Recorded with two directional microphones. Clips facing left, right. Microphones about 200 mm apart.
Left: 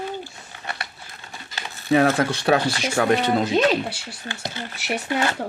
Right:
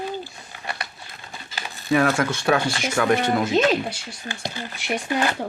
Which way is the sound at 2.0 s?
35° left (ahead or behind).